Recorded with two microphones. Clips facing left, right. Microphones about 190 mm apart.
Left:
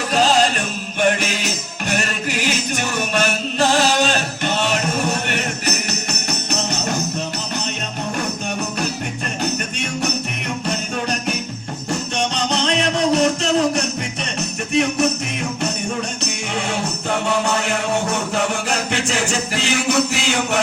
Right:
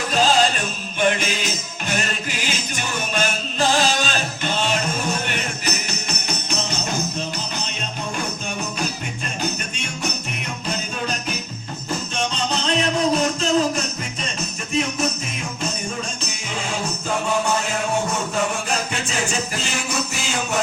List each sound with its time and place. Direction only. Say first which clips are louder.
0.1 s music: left 2 dB; 65° left (ahead or behind)
11.9 s music: left 3 dB; 75° left (ahead or behind)
14.7 s jingle bell: left 5 dB; 70° left (ahead or behind)
16.6 s music: left 2 dB; 70° left (ahead or behind)